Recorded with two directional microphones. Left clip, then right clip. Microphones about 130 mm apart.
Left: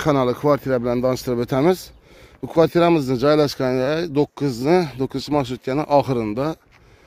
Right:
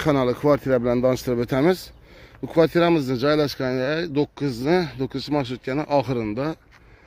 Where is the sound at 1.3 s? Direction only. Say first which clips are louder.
Left 2 dB; 15° left (ahead or behind).